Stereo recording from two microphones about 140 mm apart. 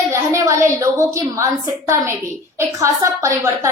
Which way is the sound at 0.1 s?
20° right (ahead or behind).